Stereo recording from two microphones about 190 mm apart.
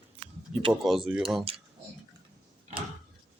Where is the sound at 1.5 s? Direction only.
30° right (ahead or behind).